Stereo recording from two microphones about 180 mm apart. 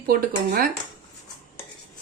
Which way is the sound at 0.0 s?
55° right (ahead or behind).